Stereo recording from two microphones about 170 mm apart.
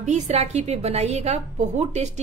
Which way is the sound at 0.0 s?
40° right (ahead or behind).